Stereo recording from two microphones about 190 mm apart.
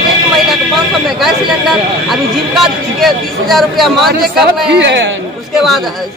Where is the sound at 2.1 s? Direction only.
Centre (ahead or behind).